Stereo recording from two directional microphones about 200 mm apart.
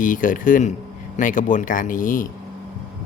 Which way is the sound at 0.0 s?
40° left (ahead or behind).